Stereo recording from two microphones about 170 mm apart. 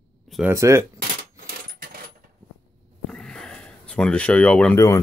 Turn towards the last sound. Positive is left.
turn(degrees=15)  # may be behind; listen again after turning